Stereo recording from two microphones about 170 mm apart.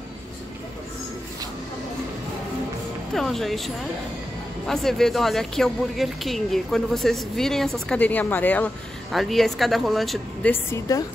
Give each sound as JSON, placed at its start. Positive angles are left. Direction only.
{"t": 3.1, "sound": "a woman's voice", "side_deg": 0}
{"t": 10.5, "sound": "a woman's voice", "side_deg": 20}